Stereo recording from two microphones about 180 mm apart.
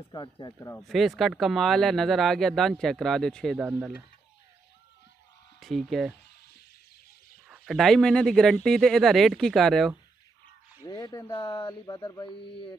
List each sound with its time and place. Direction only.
0.1 s speech: 25° left (ahead or behind)
0.8 s speech: centre (ahead or behind)
3.6 s speech: 10° right (ahead or behind)
5.6 s speech: centre (ahead or behind)
7.4 s speech: centre (ahead or behind)
10.9 s speech: 20° left (ahead or behind)